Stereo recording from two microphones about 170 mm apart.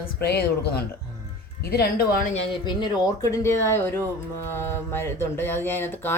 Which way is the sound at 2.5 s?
25° left (ahead or behind).